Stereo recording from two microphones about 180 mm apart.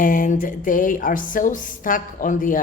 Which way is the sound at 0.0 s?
50° left (ahead or behind).